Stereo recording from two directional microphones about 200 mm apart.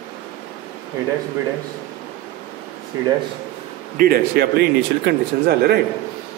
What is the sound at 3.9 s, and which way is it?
A man's voice, 50° right (ahead or behind).